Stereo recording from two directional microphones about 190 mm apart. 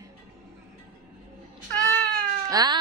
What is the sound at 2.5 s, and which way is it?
Cat, 20° right (ahead or behind).